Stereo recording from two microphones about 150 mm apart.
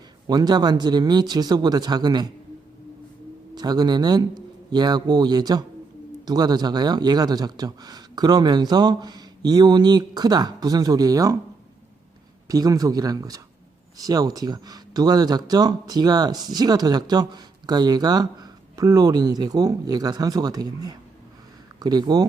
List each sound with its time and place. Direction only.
0.3 s speech: 30° right (ahead or behind)
3.5 s speech: 25° right (ahead or behind)
12.5 s speech: 25° right (ahead or behind)